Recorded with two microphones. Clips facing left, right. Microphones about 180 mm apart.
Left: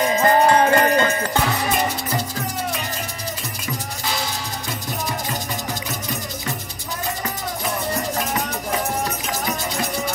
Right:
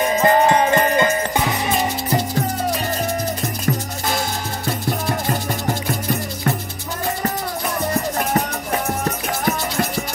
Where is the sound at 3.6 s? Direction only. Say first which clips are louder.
Right 5 dB; 50° right (ahead or behind).